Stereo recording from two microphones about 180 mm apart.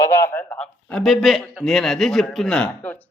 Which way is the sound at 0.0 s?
15° left (ahead or behind).